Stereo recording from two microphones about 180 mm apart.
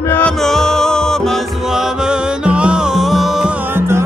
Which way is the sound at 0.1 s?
5° left (ahead or behind).